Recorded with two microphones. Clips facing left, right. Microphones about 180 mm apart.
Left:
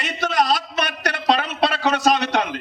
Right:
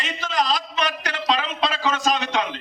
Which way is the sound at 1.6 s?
65° left (ahead or behind).